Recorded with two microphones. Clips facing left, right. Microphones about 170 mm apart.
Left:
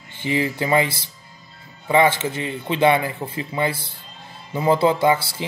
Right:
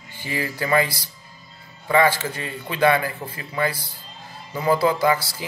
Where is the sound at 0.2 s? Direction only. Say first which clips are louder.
Left 5 dB; 20° left (ahead or behind).